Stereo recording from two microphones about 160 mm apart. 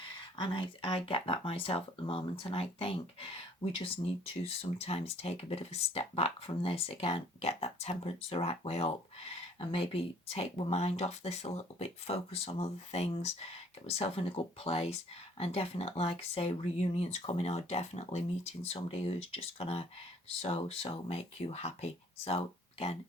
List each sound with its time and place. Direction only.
0.3 s speech: 30° left (ahead or behind)